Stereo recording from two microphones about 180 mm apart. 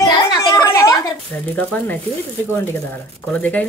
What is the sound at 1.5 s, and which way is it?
Speech, 10° left (ahead or behind).